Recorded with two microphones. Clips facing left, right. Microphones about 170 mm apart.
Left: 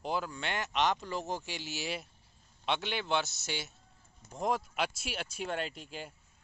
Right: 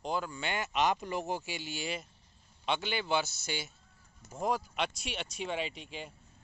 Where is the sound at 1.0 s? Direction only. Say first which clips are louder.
Right 2 dB; 15° right (ahead or behind).